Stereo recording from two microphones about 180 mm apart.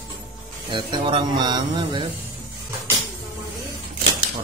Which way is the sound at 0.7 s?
25° right (ahead or behind).